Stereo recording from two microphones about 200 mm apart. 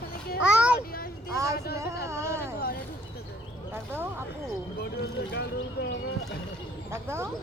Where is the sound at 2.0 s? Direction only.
15° right (ahead or behind).